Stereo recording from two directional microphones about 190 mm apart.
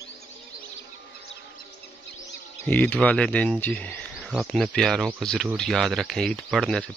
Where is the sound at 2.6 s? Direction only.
10° left (ahead or behind).